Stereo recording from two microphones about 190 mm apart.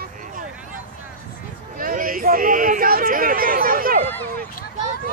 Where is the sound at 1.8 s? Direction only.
45° right (ahead or behind).